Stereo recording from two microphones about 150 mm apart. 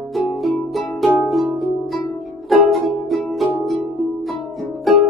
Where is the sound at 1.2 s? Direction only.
Centre (ahead or behind).